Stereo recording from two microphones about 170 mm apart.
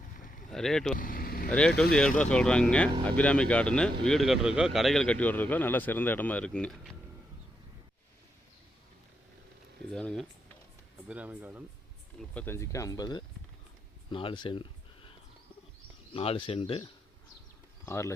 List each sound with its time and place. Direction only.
0.2 s vehicle: 50° left (ahead or behind)
0.5 s speech: 5° left (ahead or behind)
0.9 s vehicle: 55° left (ahead or behind)
1.5 s speech: 5° left (ahead or behind)
9.9 s speech: 5° left (ahead or behind)
11.1 s speech: 10° right (ahead or behind)
12.3 s speech: 10° left (ahead or behind)
14.1 s a sound: 30° left (ahead or behind)
16.1 s speech: 35° left (ahead or behind)
17.8 s speech: 15° left (ahead or behind)